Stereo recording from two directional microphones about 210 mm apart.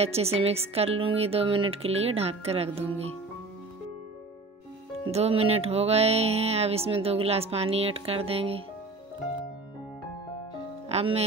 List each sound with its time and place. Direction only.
0.0 s music: 30° right (ahead or behind)
5.1 s music: 30° right (ahead or behind)
10.9 s speech: 30° right (ahead or behind)